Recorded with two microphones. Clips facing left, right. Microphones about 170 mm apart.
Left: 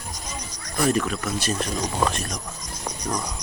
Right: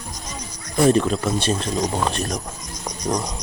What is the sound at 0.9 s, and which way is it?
Speech, 30° right (ahead or behind).